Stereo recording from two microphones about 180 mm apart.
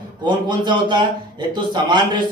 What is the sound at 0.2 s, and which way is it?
A man's voice, 25° right (ahead or behind).